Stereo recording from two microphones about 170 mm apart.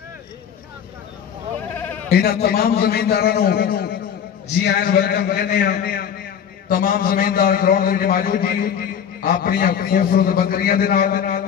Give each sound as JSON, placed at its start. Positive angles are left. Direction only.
{"t": 1.8, "sound": "sheep", "side_deg": 10}
{"t": 2.0, "sound": "a man's voice", "side_deg": 65}